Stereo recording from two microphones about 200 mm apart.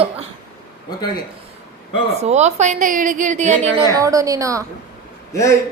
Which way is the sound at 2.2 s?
35° right (ahead or behind).